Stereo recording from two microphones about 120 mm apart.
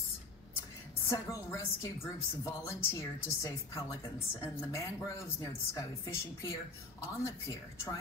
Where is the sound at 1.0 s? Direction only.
25° left (ahead or behind).